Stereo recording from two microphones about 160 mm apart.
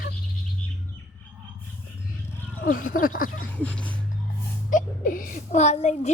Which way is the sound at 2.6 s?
60° left (ahead or behind).